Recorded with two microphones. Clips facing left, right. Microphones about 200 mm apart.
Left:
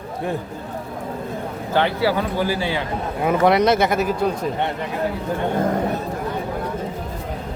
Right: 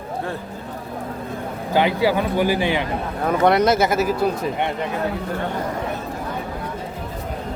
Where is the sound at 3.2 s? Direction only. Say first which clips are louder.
Even; centre (ahead or behind).